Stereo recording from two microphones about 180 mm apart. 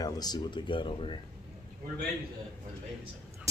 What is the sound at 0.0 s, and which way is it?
Speech, 20° left (ahead or behind).